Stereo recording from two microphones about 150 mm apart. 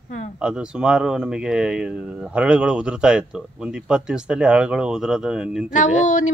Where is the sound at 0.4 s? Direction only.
5° right (ahead or behind).